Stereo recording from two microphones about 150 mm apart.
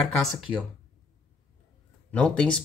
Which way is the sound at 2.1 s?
5° left (ahead or behind).